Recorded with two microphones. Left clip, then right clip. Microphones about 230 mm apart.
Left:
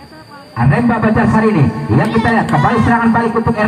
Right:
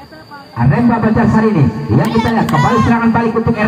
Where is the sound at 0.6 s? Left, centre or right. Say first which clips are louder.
Even; left.